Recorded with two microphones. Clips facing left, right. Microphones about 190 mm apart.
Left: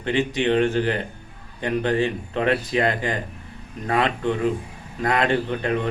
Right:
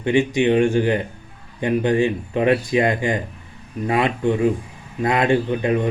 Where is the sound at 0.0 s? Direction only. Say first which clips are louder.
Right 5 dB; 15° right (ahead or behind).